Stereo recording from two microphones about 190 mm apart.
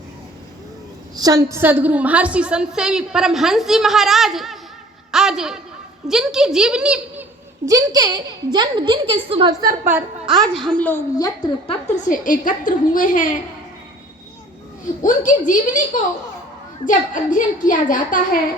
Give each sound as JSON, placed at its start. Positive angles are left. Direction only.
{"t": 1.1, "sound": "a woman's voice", "side_deg": -20}
{"t": 7.6, "sound": "a woman's voice", "side_deg": -15}
{"t": 9.6, "sound": "a woman's voice", "side_deg": -50}
{"t": 9.9, "sound": "a woman's voice", "side_deg": 0}
{"t": 11.7, "sound": "a woman's voice", "side_deg": 40}
{"t": 15.0, "sound": "a woman's voice", "side_deg": 45}
{"t": 16.8, "sound": "a woman's voice", "side_deg": 45}